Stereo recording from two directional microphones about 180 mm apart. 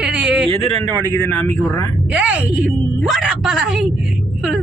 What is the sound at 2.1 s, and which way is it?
A woman's voice, 5° right (ahead or behind).